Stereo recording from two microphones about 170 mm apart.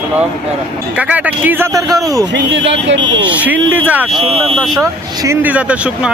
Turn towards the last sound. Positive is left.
turn(degrees=-5)  # may be behind; listen again after turning